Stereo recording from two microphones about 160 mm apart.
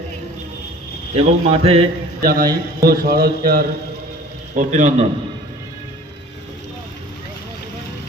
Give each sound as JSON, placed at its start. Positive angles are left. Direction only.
{"t": 1.1, "sound": "a man's voice", "side_deg": -35}
{"t": 2.2, "sound": "a man's voice", "side_deg": -70}
{"t": 4.5, "sound": "a man's voice", "side_deg": -50}